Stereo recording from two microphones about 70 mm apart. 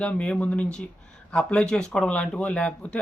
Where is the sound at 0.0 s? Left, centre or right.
Centre.